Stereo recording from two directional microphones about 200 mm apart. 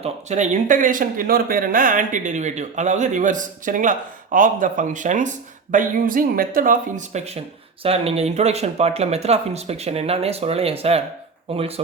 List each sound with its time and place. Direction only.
0.0 s speech: 35° right (ahead or behind)